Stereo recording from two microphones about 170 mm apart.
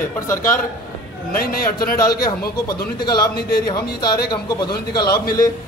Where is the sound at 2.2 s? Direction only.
25° left (ahead or behind).